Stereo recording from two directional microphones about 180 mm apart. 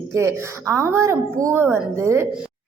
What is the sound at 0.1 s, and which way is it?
A woman's voice, 15° right (ahead or behind).